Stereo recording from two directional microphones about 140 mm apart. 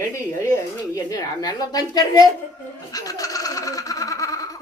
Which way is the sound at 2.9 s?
25° left (ahead or behind).